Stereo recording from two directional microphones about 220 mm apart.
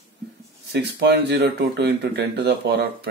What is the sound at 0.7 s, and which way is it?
Speech, 50° right (ahead or behind).